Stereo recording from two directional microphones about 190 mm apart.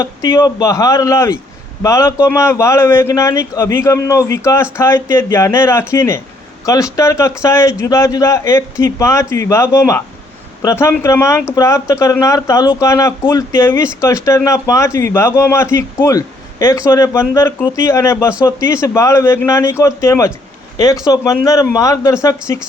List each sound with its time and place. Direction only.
0.0 s speech: 20° left (ahead or behind)